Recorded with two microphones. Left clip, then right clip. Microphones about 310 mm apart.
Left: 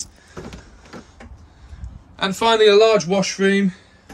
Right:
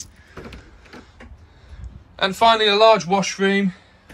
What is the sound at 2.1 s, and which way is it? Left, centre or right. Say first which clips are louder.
A man's voice: right 1 dB; centre.